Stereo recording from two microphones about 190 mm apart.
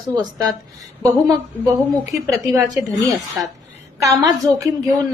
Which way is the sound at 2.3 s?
15° right (ahead or behind).